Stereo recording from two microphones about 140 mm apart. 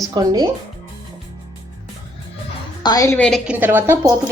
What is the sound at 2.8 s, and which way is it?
Speech, 25° left (ahead or behind).